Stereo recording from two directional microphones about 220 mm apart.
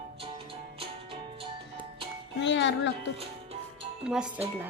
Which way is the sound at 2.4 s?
55° left (ahead or behind).